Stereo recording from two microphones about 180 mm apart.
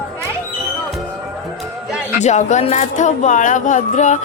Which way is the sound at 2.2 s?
40° left (ahead or behind).